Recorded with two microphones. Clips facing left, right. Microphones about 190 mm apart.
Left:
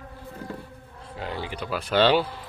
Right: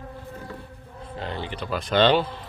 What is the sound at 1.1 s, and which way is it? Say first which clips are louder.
Speech: even; 10° left (ahead or behind).